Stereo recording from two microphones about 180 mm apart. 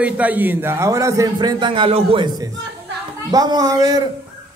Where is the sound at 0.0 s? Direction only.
10° right (ahead or behind).